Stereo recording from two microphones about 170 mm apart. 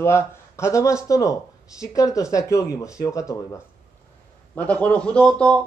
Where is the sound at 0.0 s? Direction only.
15° left (ahead or behind).